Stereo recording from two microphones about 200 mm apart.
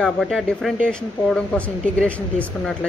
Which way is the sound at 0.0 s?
Centre (ahead or behind).